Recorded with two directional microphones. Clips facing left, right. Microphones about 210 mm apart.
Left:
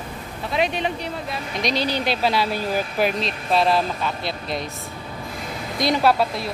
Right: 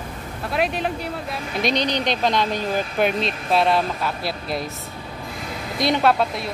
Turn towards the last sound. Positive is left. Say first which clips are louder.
# even
turn(degrees=5)  # may be behind; listen again after turning